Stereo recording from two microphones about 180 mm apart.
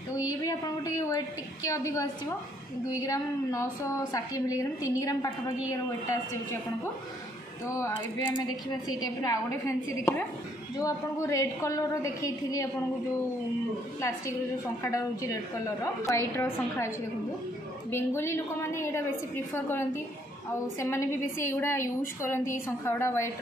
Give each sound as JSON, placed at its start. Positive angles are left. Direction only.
{"t": 0.3, "sound": "a woman's voice", "side_deg": 20}
{"t": 10.8, "sound": "a woman's voice", "side_deg": 20}
{"t": 14.8, "sound": "a woman's voice", "side_deg": 15}
{"t": 17.9, "sound": "a woman's voice", "side_deg": 15}